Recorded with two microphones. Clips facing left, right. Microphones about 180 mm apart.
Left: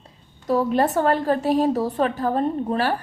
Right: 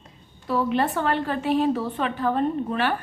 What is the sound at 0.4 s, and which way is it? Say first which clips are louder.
A woman's voice: left 3 dB; 40° left (ahead or behind).